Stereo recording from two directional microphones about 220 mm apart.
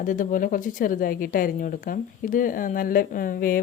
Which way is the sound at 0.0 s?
35° left (ahead or behind).